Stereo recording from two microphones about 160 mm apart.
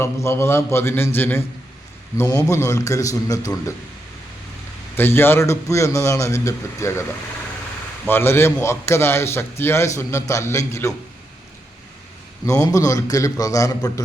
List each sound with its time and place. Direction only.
0.0 s a man's voice: 15° left (ahead or behind)
4.9 s a man's voice: 15° left (ahead or behind)
8.0 s a man's voice: 15° left (ahead or behind)
12.5 s a man's voice: 20° left (ahead or behind)